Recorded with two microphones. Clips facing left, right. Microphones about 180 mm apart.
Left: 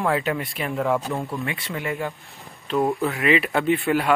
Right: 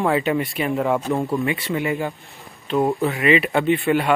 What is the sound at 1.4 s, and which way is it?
Speech, centre (ahead or behind).